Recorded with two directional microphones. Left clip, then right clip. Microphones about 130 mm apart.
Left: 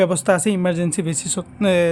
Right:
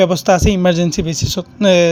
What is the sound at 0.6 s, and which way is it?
Speech, 35° right (ahead or behind).